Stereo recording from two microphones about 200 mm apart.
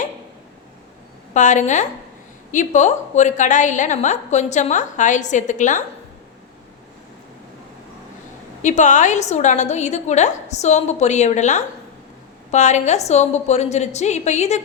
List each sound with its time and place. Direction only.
1.3 s a woman's voice: 40° left (ahead or behind)
8.6 s a woman's voice: 35° left (ahead or behind)